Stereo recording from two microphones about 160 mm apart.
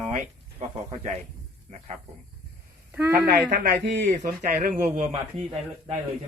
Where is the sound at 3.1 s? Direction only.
75° right (ahead or behind); by 4.7 s 60° right (ahead or behind).